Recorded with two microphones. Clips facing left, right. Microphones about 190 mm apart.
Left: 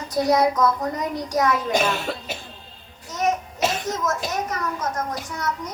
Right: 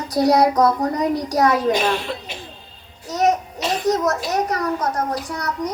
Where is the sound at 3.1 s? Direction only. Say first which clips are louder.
Right 5 dB; 35° right (ahead or behind).